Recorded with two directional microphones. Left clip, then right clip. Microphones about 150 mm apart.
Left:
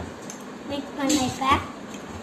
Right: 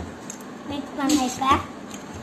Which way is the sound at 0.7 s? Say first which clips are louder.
Right 1 dB; 20° right (ahead or behind).